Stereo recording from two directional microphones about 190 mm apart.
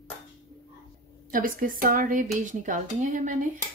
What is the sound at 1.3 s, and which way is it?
Speech, 50° right (ahead or behind).